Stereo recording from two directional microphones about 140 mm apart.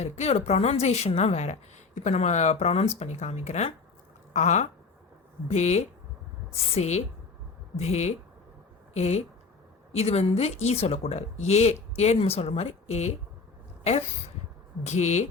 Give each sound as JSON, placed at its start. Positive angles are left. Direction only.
{"t": 0.0, "sound": "speech", "side_deg": 50}
{"t": 14.8, "sound": "speech", "side_deg": 55}